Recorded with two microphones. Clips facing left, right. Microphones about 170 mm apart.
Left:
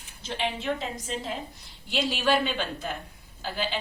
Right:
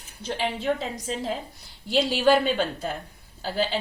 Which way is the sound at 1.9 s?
35° right (ahead or behind).